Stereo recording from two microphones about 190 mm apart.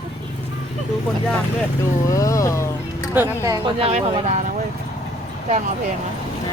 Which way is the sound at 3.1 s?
15° right (ahead or behind).